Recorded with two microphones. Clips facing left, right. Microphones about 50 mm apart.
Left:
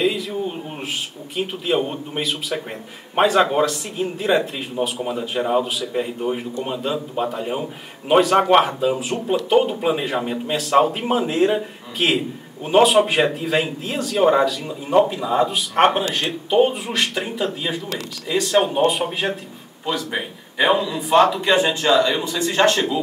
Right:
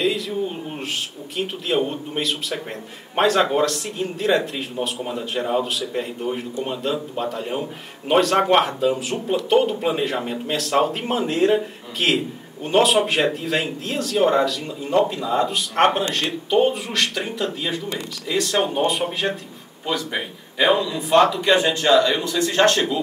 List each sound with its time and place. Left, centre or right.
1.3 s a man's voice: centre
20.8 s a man's voice: centre
22.2 s a man's voice: centre
22.5 s speech: centre